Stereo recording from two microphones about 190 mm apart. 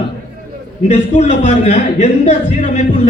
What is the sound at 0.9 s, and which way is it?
A man's voice, 40° left (ahead or behind).